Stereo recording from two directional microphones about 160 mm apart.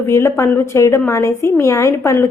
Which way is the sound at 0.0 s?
15° left (ahead or behind).